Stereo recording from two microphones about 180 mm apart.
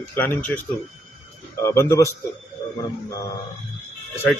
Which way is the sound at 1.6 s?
15° left (ahead or behind).